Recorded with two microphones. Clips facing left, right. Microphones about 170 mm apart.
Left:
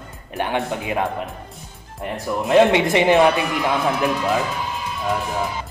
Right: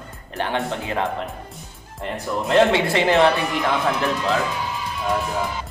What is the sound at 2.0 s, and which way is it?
A man's voice, 15° left (ahead or behind).